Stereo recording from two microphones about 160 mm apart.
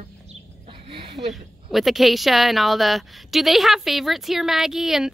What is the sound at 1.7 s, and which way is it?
A woman's voice, centre (ahead or behind).